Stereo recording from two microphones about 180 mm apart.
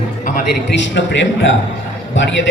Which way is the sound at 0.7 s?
90° left.